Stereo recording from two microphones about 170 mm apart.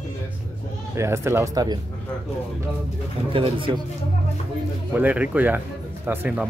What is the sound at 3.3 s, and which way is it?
Speech, 30° right (ahead or behind).